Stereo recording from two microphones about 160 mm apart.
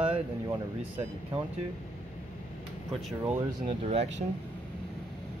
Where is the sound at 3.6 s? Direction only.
40° right (ahead or behind).